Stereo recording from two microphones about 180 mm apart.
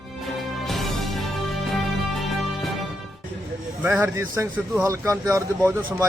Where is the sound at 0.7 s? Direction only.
Centre (ahead or behind).